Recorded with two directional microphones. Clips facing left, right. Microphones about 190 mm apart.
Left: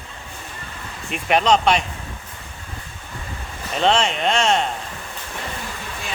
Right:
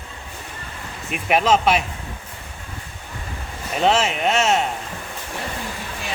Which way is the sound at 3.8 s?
5° right (ahead or behind).